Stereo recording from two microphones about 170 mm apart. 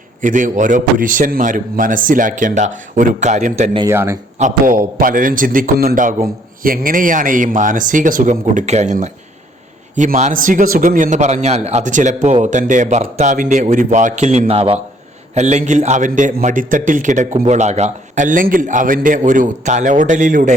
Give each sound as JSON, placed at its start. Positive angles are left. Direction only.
{"t": 0.2, "sound": "a man's voice", "side_deg": -50}
{"t": 3.8, "sound": "speech", "side_deg": -15}
{"t": 4.4, "sound": "a man's voice", "side_deg": -50}